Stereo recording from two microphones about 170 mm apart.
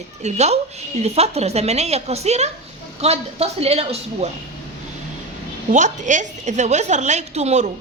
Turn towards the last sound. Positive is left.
turn(degrees=-40)  # may be behind; listen again after turning